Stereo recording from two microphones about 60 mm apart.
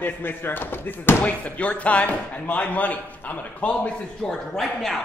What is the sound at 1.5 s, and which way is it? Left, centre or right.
A man's voice, left.